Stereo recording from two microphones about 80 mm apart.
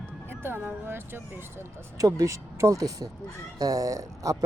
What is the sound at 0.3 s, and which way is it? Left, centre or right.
Speech, right.